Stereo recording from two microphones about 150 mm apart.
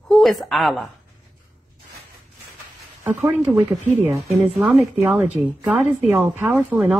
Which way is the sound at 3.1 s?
20° right (ahead or behind).